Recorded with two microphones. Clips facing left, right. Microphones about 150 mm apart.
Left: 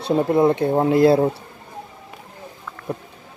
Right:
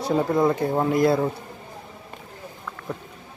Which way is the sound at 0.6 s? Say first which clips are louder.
Left 5 dB; 25° left (ahead or behind).